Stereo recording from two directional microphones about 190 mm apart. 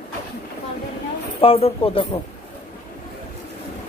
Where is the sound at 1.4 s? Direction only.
30° left (ahead or behind).